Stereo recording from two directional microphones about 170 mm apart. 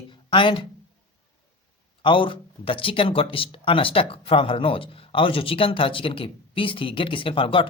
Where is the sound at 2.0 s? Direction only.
30° left (ahead or behind).